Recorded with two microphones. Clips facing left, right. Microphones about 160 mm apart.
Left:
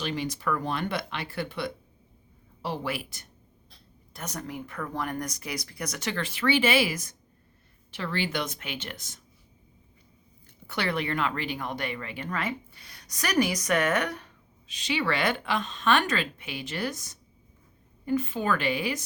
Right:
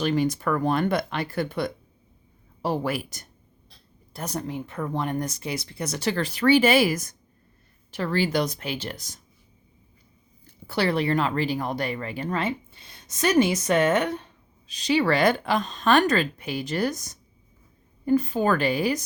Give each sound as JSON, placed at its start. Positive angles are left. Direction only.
{"t": 0.0, "sound": "speech", "side_deg": -45}
{"t": 4.1, "sound": "speech", "side_deg": -30}
{"t": 10.4, "sound": "speech", "side_deg": -35}
{"t": 14.7, "sound": "speech", "side_deg": -40}